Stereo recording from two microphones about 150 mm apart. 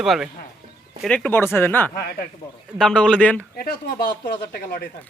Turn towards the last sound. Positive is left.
turn(degrees=90)